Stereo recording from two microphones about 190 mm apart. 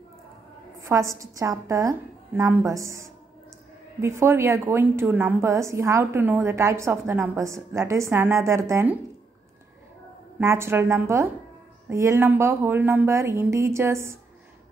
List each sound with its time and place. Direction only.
0.8 s a woman's voice: 15° right (ahead or behind)
10.4 s a woman's voice: 15° right (ahead or behind)